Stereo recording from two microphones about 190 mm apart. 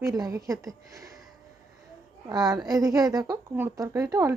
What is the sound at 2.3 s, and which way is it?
A woman's voice, 20° right (ahead or behind).